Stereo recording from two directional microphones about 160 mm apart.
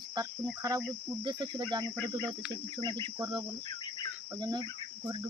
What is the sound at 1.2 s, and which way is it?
Cricket, 30° right (ahead or behind).